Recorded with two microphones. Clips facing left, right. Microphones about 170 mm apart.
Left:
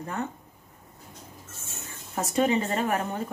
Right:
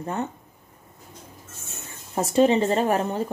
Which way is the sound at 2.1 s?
30° right (ahead or behind).